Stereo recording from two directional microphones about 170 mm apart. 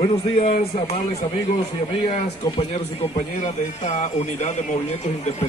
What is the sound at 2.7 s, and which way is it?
A man's voice, 45° left (ahead or behind).